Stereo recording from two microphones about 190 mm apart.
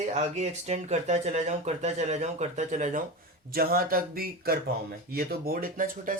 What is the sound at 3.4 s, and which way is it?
Speech, 50° right (ahead or behind).